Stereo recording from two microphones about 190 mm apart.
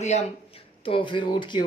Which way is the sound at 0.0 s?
35° left (ahead or behind).